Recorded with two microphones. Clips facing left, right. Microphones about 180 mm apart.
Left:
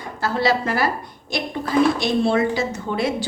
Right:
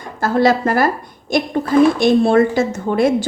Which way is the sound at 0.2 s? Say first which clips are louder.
Right 6 dB; 50° right (ahead or behind).